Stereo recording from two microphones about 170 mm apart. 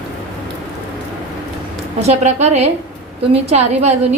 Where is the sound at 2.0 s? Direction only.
40° right (ahead or behind).